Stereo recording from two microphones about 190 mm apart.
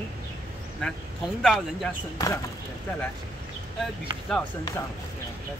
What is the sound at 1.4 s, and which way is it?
Speech, centre (ahead or behind).